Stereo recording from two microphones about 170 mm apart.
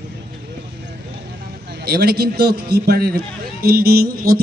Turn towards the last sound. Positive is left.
turn(degrees=-60)  # may be behind; listen again after turning